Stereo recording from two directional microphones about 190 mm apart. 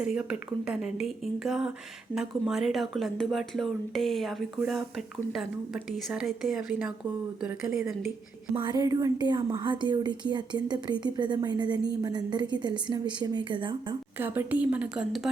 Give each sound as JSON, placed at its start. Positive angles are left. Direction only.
{"t": 0.0, "sound": "speech", "side_deg": -5}
{"t": 8.5, "sound": "a woman's voice", "side_deg": -20}
{"t": 14.2, "sound": "a woman's voice", "side_deg": -10}